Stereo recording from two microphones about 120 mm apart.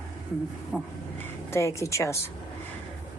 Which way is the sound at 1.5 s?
25° left (ahead or behind).